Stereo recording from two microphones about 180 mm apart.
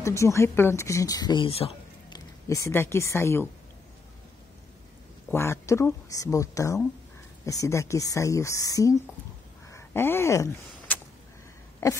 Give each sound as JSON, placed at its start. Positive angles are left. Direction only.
{"t": 0.0, "sound": "speech", "side_deg": 15}
{"t": 5.3, "sound": "a woman's voice", "side_deg": 15}
{"t": 9.7, "sound": "a sound", "side_deg": 15}
{"t": 11.8, "sound": "a woman's voice", "side_deg": 15}